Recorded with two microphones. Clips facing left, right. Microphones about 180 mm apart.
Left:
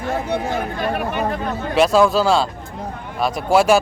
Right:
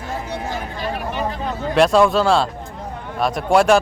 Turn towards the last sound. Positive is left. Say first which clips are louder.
# even
turn(degrees=0)  # may be behind; listen again after turning